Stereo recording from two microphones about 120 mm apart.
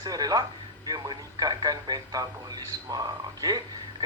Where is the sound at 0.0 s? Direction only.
30° right (ahead or behind).